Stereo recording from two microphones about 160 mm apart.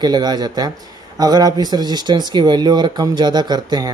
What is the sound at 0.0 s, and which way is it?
Speech, 25° right (ahead or behind).